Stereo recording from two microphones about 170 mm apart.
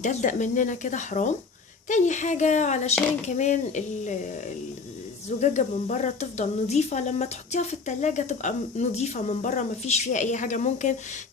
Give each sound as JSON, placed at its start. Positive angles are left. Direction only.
{"t": 0.0, "sound": "speech", "side_deg": 45}
{"t": 5.4, "sound": "speech", "side_deg": 45}